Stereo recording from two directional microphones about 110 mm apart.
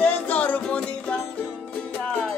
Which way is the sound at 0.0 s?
15° left (ahead or behind).